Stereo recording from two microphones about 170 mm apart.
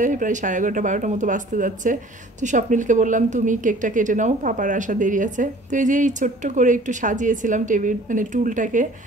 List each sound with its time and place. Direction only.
0.0 s a woman's voice: 50° right (ahead or behind)